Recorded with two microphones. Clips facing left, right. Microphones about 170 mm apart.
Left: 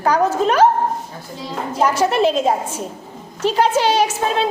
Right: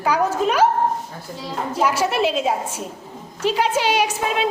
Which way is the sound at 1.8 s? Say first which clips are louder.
Left 4 dB; 10° right (ahead or behind).